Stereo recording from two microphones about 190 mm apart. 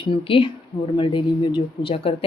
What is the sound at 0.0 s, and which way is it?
A woman's voice, 25° left (ahead or behind).